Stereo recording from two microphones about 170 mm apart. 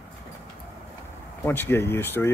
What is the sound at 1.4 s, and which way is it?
Speech, 15° left (ahead or behind).